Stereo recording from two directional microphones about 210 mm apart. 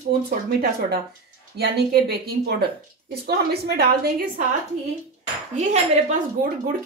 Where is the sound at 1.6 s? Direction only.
50° right (ahead or behind).